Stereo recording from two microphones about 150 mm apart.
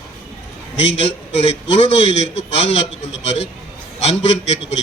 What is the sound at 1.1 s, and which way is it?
A man's voice, 45° left (ahead or behind).